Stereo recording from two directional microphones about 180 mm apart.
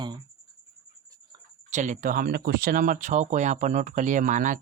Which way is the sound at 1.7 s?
45° right (ahead or behind).